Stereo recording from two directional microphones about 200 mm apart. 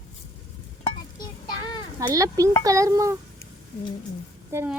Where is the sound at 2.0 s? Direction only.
15° right (ahead or behind).